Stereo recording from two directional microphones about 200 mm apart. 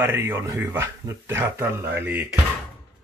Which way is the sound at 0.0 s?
15° right (ahead or behind).